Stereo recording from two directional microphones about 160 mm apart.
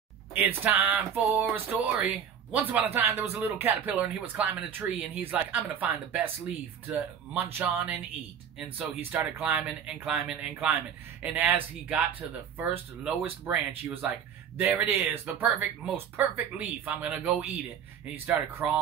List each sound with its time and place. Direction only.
0.6 s speech: 10° right (ahead or behind)
0.9 s music: centre (ahead or behind)
1.5 s speech: 10° right (ahead or behind)
18.6 s music: 5° right (ahead or behind)